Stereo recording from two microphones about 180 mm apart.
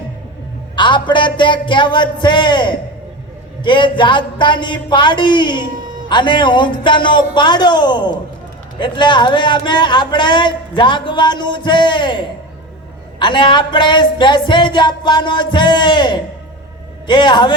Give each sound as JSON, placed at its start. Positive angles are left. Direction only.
{"t": 0.8, "sound": "a man's voice", "side_deg": 25}